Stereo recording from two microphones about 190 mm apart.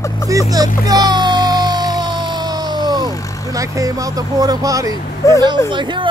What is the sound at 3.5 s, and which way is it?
Speech, 15° right (ahead or behind).